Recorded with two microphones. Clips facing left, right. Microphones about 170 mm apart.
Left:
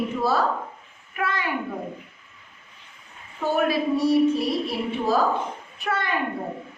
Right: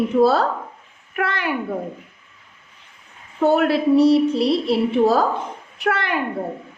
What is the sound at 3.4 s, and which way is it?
A woman's voice, 70° right (ahead or behind).